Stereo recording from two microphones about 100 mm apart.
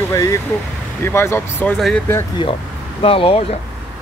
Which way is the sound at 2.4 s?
55° left (ahead or behind).